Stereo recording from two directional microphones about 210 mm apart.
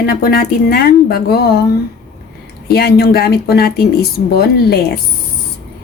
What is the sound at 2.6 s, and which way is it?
A woman's voice, 50° left (ahead or behind).